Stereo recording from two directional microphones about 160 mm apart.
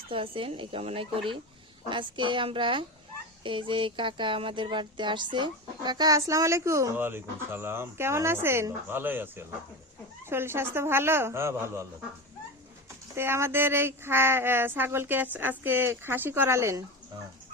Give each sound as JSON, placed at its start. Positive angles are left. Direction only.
{"t": 0.1, "sound": "a woman's voice", "side_deg": -35}
{"t": 3.4, "sound": "music", "side_deg": -30}
{"t": 10.2, "sound": "speech", "side_deg": -15}
{"t": 13.1, "sound": "speech", "side_deg": -15}